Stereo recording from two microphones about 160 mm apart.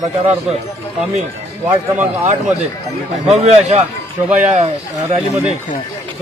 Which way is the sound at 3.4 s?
45° right (ahead or behind).